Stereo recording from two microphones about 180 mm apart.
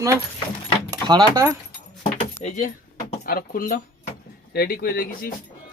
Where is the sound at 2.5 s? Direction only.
45° left (ahead or behind).